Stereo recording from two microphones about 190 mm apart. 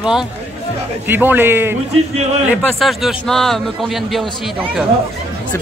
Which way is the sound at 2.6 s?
Centre (ahead or behind).